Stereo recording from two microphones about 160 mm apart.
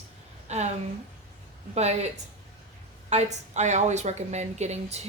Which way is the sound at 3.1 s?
45° right (ahead or behind).